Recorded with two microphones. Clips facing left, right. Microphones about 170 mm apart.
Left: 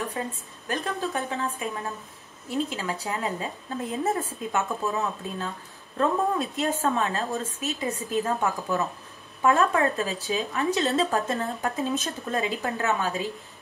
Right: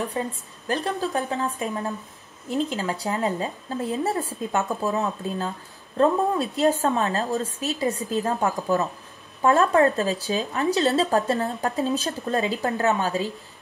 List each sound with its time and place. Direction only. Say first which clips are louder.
0.7 s speech: right 3 dB; 35° right (ahead or behind)